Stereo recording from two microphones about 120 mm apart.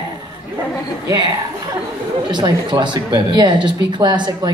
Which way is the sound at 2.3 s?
40° right (ahead or behind).